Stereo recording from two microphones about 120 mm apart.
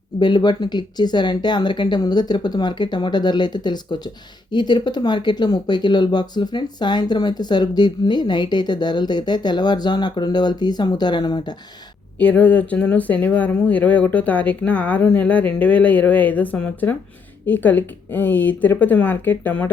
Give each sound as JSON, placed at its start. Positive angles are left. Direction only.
{"t": 0.2, "sound": "speech", "side_deg": 40}
{"t": 12.2, "sound": "speech", "side_deg": 10}